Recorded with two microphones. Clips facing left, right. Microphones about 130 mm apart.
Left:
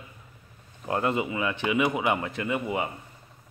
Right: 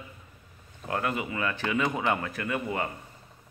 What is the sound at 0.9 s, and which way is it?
Speech, 25° left (ahead or behind).